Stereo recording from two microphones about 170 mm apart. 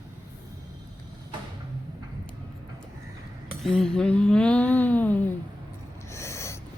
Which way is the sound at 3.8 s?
5° left (ahead or behind).